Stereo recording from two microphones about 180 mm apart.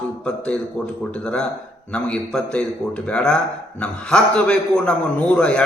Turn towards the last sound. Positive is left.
turn(degrees=5)  # may be behind; listen again after turning